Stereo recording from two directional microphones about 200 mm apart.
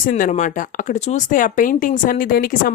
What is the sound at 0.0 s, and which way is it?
Speech, 40° left (ahead or behind).